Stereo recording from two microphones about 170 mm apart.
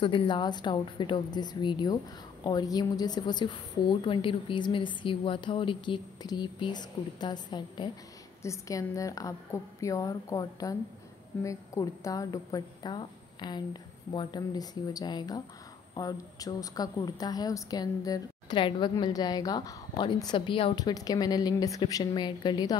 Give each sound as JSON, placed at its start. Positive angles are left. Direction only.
{"t": 0.0, "sound": "a woman's voice", "side_deg": 30}